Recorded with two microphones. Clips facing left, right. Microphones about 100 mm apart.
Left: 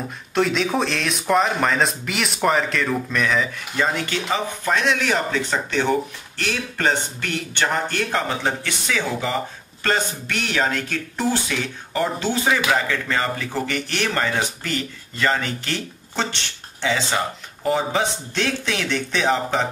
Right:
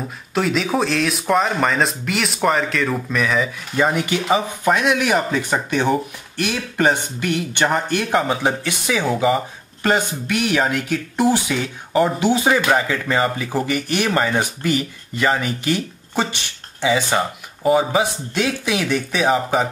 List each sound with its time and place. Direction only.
0.3 s speech: centre (ahead or behind)